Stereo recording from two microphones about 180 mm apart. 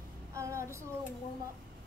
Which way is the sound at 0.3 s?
15° right (ahead or behind).